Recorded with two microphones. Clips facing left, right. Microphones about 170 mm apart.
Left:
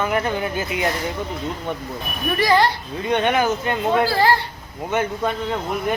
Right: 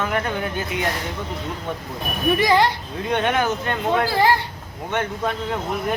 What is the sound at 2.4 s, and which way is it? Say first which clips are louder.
Speech: left 2 dB; 20° right (ahead or behind).